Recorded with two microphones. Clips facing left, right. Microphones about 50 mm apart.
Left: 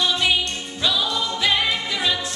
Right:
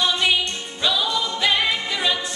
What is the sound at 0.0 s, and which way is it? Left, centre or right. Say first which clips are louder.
Music: even; centre.